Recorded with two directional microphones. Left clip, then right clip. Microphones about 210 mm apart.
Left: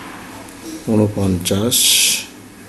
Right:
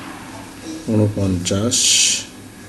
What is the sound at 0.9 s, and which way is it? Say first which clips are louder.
Speech: left 2 dB; 20° left (ahead or behind).